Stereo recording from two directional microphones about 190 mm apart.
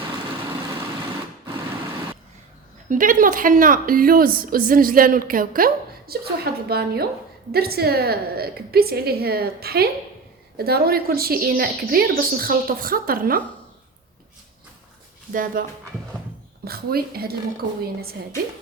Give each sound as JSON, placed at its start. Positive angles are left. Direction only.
{"t": 2.9, "sound": "a woman's voice", "side_deg": -45}
{"t": 15.3, "sound": "a woman's voice", "side_deg": -45}
{"t": 16.6, "sound": "a woman's voice", "side_deg": -55}